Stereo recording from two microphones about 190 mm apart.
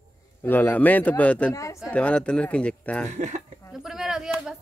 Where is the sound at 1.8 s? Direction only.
5° left (ahead or behind).